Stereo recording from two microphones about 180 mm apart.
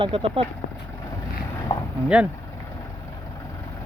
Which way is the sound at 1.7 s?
20° left (ahead or behind).